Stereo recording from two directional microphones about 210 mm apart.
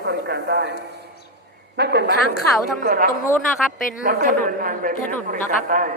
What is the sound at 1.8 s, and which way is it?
Speech, 55° right (ahead or behind).